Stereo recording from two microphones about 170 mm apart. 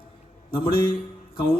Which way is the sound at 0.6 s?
60° left (ahead or behind).